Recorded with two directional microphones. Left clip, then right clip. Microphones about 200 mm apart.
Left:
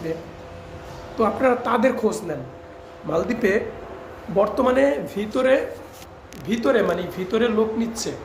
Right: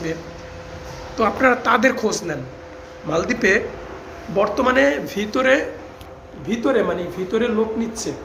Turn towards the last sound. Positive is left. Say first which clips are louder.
# even
turn(degrees=10)  # may be behind; listen again after turning